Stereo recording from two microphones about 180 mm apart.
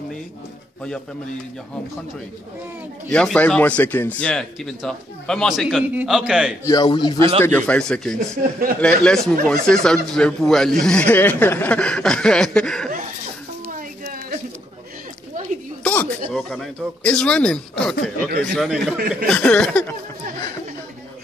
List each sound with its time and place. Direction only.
3.1 s speech: 5° left (ahead or behind)
6.6 s a man's voice: 20° left (ahead or behind)
7.2 s speech: 30° right (ahead or behind)
7.4 s speech: 10° left (ahead or behind)
8.4 s speech: 50° right (ahead or behind)
9.0 s speech: centre (ahead or behind)
13.7 s a sound: 50° right (ahead or behind)
15.8 s a sound: 10° left (ahead or behind)
16.3 s speech: centre (ahead or behind)